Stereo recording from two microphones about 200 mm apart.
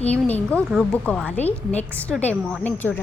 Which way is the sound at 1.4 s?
35° left (ahead or behind).